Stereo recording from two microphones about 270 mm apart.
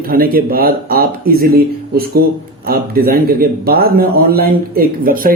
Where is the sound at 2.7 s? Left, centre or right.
Right.